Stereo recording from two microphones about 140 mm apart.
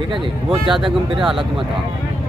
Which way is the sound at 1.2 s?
Centre (ahead or behind).